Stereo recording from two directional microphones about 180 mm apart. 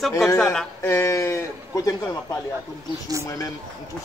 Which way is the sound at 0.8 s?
15° left (ahead or behind).